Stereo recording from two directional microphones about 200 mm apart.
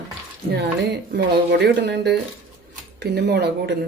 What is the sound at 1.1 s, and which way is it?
Speech, 55° right (ahead or behind).